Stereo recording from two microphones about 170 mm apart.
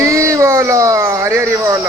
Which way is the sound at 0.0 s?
15° right (ahead or behind).